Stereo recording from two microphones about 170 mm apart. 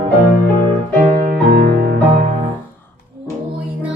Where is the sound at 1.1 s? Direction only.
55° right (ahead or behind).